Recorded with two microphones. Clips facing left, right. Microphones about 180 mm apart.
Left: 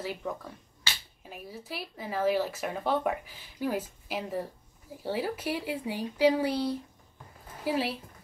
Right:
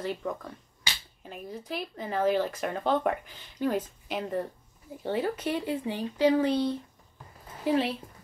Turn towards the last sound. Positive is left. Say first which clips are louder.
# right 3 dB
turn(degrees=5)  # may be behind; listen again after turning